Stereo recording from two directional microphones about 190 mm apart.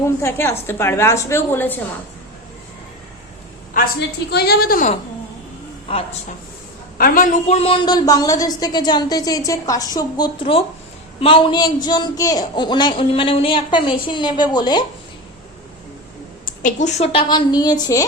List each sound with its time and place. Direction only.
0.0 s a woman's voice: 15° left (ahead or behind)
4.3 s a woman's voice: 60° left (ahead or behind)
7.0 s speech: 45° left (ahead or behind); by 14.8 s 20° left (ahead or behind)
16.6 s speech: 40° left (ahead or behind); by 18.0 s 20° left (ahead or behind)